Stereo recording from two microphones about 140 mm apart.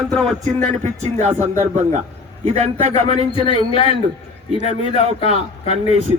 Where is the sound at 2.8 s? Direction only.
50° right (ahead or behind).